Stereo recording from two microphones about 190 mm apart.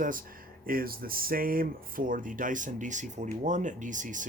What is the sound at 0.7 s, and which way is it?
Speech, 50° right (ahead or behind).